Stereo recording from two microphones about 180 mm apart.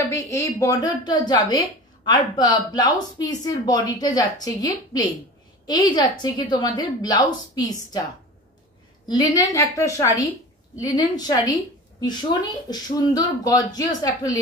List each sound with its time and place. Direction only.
0.1 s speech: 15° left (ahead or behind)
9.0 s speech: 20° left (ahead or behind)